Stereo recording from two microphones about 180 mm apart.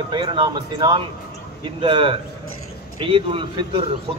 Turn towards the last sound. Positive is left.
turn(degrees=-30)  # may be behind; listen again after turning